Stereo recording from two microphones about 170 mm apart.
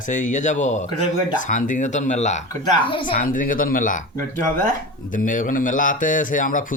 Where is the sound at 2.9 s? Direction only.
30° left (ahead or behind).